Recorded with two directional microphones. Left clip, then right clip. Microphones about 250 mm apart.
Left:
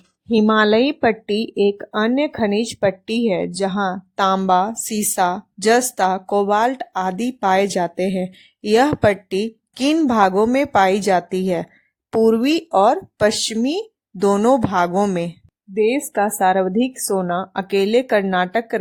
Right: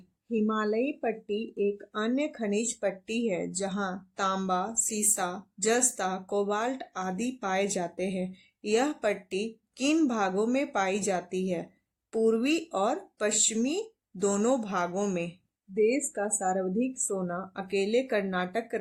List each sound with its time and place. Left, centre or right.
0.3 s speech: left